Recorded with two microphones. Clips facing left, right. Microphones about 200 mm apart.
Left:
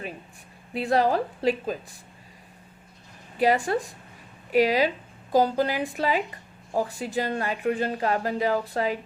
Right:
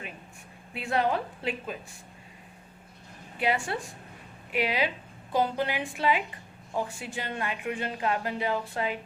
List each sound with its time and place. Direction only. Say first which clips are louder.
0.7 s a woman's voice: left 5 dB; 35° left (ahead or behind)
3.3 s a woman's voice: left 7 dB; 40° left (ahead or behind)